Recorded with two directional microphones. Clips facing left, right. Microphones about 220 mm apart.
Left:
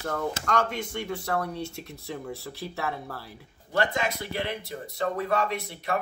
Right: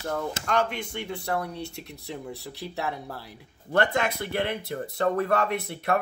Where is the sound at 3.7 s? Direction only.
55° right (ahead or behind).